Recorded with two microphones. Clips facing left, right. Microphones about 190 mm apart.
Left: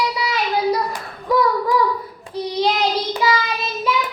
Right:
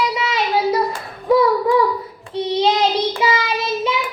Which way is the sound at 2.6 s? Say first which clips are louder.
Right 2 dB; 25° right (ahead or behind).